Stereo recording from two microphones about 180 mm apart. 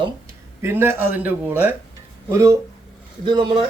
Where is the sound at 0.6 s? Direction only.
15° right (ahead or behind).